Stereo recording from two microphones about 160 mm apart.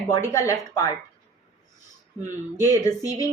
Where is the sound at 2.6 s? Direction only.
20° left (ahead or behind).